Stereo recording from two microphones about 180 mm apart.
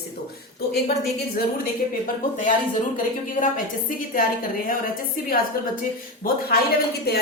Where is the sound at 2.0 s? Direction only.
45° left (ahead or behind).